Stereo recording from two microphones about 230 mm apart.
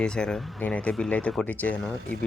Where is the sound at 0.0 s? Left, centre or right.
Centre.